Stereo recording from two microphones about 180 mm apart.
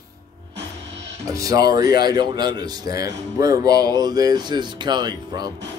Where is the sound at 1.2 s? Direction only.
20° right (ahead or behind).